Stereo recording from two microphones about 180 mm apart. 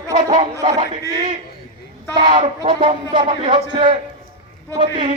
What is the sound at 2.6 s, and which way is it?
A man's voice, 25° right (ahead or behind).